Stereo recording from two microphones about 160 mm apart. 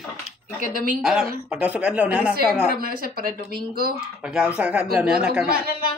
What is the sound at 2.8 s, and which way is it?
Speech, 65° right (ahead or behind).